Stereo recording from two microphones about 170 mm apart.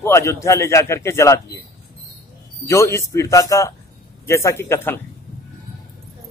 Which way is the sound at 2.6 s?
15° left (ahead or behind).